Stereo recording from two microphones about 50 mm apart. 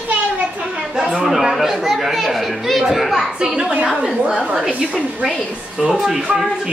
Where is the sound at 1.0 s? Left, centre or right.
Centre.